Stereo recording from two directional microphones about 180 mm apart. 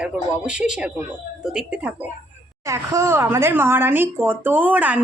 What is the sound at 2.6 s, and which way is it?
Speech, 15° right (ahead or behind).